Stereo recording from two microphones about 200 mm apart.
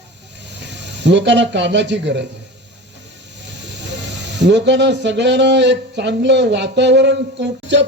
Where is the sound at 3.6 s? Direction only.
60° right (ahead or behind).